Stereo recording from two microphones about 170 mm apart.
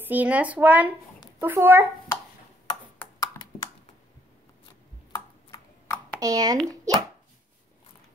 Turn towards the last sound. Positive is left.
turn(degrees=-25)  # may be behind; listen again after turning